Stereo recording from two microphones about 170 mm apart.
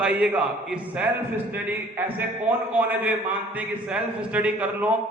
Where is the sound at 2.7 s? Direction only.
10° right (ahead or behind).